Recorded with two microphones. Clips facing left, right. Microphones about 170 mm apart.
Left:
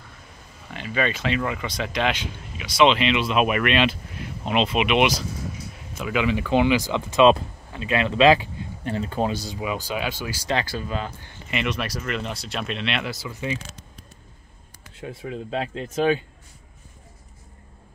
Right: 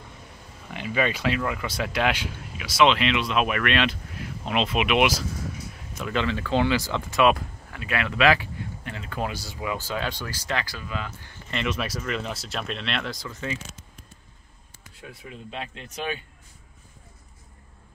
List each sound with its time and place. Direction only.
0.7 s speech: 10° right (ahead or behind)
6.2 s speech: 15° left (ahead or behind)
8.8 s speech: 35° left (ahead or behind); by 10.4 s 10° left (ahead or behind)
10.4 s speech: 25° left (ahead or behind)
11.5 s speech: centre (ahead or behind)
13.3 s speech: 15° left (ahead or behind)
15.2 s speech: 40° left (ahead or behind)